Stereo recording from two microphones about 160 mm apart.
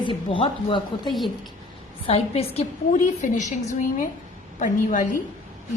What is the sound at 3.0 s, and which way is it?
A woman's voice, 50° left (ahead or behind).